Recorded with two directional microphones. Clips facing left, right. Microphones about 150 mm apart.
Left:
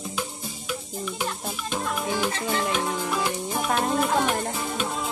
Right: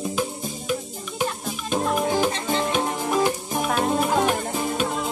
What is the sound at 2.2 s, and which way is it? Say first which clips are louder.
Music: right 3 dB; 20° right (ahead or behind).